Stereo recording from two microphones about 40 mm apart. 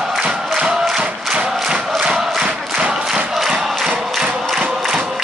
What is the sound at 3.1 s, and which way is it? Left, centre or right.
Crowd, centre.